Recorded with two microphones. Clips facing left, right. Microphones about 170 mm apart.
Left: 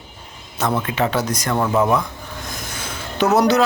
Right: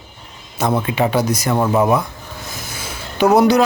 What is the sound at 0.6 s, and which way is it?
Speech, 15° right (ahead or behind).